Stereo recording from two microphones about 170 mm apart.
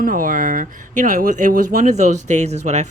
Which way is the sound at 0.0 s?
50° right (ahead or behind).